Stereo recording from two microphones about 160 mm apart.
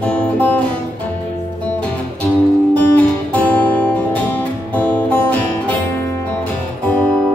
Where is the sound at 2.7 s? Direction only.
10° left (ahead or behind).